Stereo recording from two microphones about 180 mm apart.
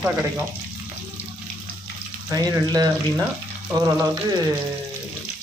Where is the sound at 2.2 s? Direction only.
20° right (ahead or behind).